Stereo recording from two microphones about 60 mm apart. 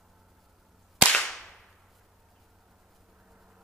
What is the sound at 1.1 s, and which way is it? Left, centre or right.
Whip, centre.